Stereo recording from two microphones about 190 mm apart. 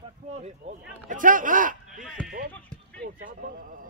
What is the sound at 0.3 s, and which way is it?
Speech, 35° right (ahead or behind).